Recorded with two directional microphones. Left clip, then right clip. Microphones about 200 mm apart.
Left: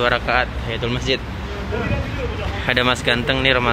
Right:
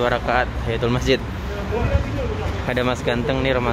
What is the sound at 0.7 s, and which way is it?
Speech, 35° right (ahead or behind).